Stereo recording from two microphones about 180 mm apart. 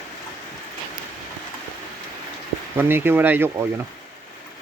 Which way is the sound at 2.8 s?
10° right (ahead or behind).